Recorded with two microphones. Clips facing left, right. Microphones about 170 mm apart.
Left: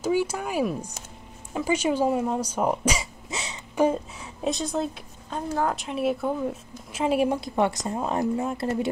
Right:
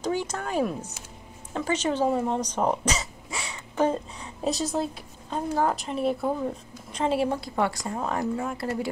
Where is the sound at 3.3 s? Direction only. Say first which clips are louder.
Left 1 dB; 20° left (ahead or behind).